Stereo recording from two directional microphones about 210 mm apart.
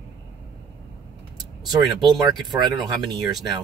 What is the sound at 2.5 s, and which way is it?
Speech, 20° right (ahead or behind).